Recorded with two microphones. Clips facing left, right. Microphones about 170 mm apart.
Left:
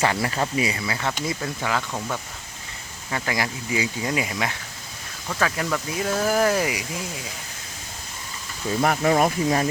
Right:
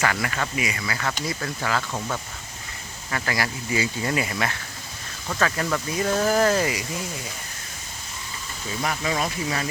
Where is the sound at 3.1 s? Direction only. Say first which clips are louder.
Left 1 dB; 15° left (ahead or behind).